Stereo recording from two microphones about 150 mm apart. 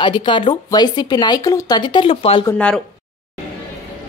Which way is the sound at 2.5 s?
5° left (ahead or behind).